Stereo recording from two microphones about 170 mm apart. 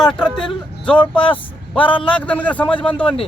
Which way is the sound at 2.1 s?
10° left (ahead or behind).